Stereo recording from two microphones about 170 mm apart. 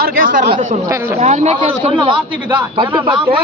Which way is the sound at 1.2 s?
40° right (ahead or behind).